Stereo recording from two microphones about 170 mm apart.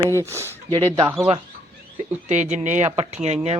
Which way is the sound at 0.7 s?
25° right (ahead or behind).